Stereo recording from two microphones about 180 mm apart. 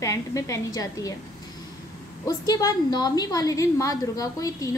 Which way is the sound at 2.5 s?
20° left (ahead or behind).